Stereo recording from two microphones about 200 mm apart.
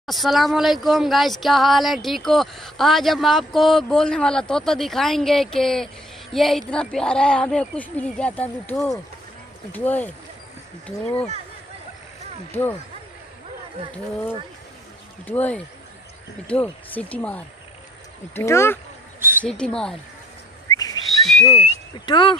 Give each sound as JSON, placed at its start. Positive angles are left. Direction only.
{"t": 0.0, "sound": "speech", "side_deg": 0}
{"t": 11.1, "sound": "speech", "side_deg": 30}
{"t": 12.4, "sound": "speech", "side_deg": 10}
{"t": 15.2, "sound": "speech", "side_deg": 10}
{"t": 19.1, "sound": "a sound", "side_deg": -10}
{"t": 19.4, "sound": "speech", "side_deg": 5}
{"t": 20.7, "sound": "a sound", "side_deg": 20}
{"t": 21.2, "sound": "whistling", "side_deg": 0}
{"t": 21.9, "sound": "speech", "side_deg": 25}